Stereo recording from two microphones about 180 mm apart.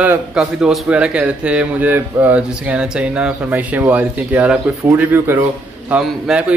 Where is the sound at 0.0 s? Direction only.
5° right (ahead or behind).